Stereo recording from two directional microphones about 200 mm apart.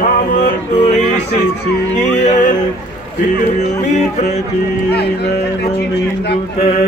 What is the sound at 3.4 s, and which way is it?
Music, 35° left (ahead or behind).